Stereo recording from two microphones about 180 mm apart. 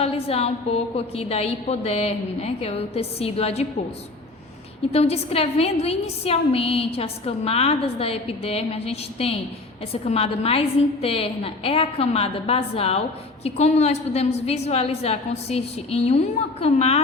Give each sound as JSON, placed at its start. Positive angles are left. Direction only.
{"t": 0.0, "sound": "a woman's voice", "side_deg": 35}
{"t": 4.9, "sound": "a woman's voice", "side_deg": 35}